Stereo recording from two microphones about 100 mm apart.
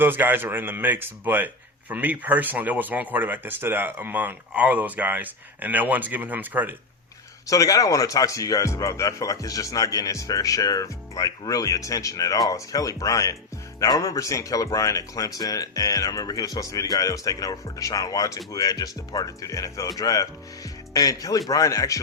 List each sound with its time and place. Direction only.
0.0 s speech: 20° right (ahead or behind)
7.4 s speech: 35° left (ahead or behind)